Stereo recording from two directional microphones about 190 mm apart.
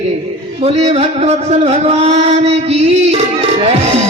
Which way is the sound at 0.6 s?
35° right (ahead or behind).